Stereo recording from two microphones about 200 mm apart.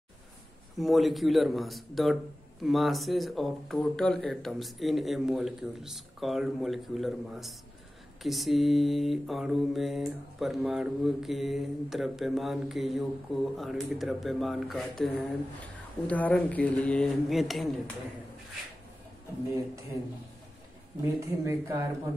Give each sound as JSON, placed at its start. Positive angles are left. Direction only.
{"t": 0.7, "sound": "mantra", "side_deg": 0}
{"t": 21.0, "sound": "speech", "side_deg": -15}